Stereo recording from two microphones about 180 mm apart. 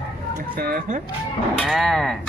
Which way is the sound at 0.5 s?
50° right (ahead or behind).